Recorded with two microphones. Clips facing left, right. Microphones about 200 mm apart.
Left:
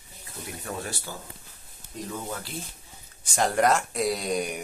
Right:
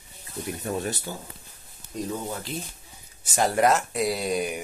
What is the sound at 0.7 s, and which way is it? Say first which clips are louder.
Speech: right 5 dB; 20° right (ahead or behind).